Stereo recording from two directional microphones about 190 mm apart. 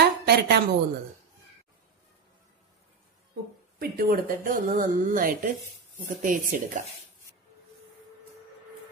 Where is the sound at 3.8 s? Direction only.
50° right (ahead or behind).